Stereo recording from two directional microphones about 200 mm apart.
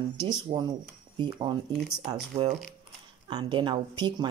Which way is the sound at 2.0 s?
30° right (ahead or behind).